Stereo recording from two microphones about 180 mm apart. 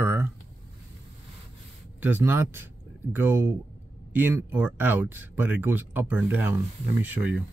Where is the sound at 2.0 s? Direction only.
10° right (ahead or behind).